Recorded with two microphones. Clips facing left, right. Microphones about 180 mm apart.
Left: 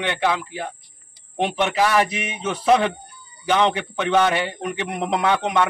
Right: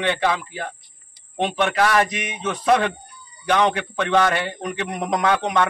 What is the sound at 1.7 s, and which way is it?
A man's voice, 5° left (ahead or behind).